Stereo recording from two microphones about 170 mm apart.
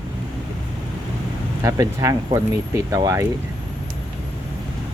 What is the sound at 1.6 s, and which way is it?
Speech, 15° right (ahead or behind).